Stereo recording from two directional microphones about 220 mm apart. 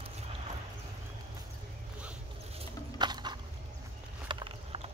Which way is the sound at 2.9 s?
20° right (ahead or behind).